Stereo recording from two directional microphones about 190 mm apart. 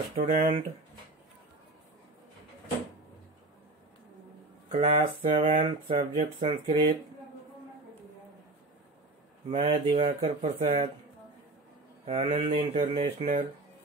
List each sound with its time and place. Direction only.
0.1 s speech: 40° right (ahead or behind)
4.6 s speech: 30° right (ahead or behind)
9.5 s speech: 30° right (ahead or behind)
12.1 s speech: 30° right (ahead or behind)